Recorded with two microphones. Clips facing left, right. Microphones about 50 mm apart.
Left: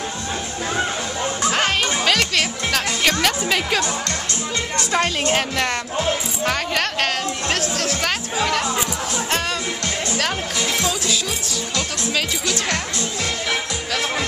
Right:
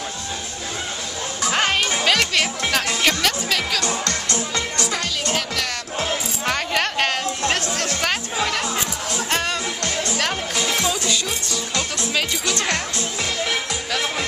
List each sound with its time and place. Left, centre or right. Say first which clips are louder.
1.5 s music: right 2 dB; centre
3.4 s speech: left 2 dB; centre
4.7 s a woman's voice: left 4 dB; left
6.4 s music: even; centre
10.1 s music: even; centre
11.7 s speech: even; centre